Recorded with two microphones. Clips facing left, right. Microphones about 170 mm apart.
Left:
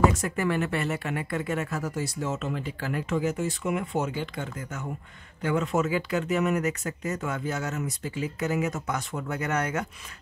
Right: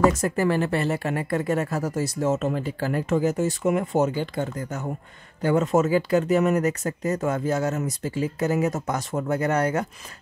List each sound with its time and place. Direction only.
0.2 s speech: 35° right (ahead or behind)